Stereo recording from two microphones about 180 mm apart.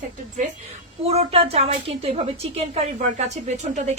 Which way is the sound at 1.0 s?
35° right (ahead or behind).